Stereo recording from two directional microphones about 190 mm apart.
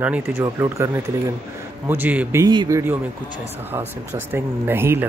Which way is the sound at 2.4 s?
20° right (ahead or behind).